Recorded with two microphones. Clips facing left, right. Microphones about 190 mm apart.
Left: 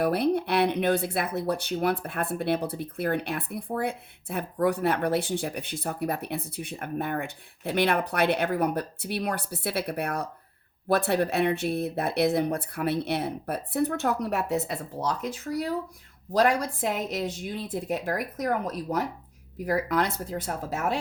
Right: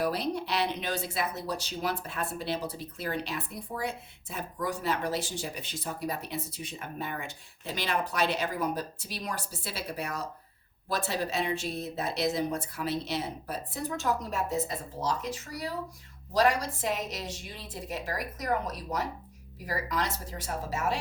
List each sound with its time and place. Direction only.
0.0 s speech: 55° left (ahead or behind)